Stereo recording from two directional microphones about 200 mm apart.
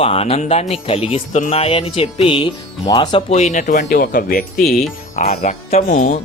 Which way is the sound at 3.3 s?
35° left (ahead or behind).